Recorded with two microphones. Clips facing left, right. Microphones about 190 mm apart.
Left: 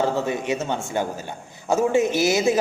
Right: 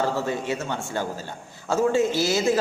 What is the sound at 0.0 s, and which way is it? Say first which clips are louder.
A man's voice: left 2 dB; 20° left (ahead or behind).